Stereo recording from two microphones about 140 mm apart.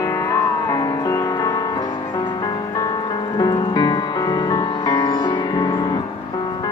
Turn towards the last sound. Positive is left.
turn(degrees=30)  # may be behind; listen again after turning